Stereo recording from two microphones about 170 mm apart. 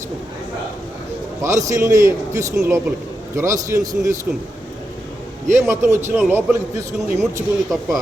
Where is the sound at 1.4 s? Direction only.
20° right (ahead or behind).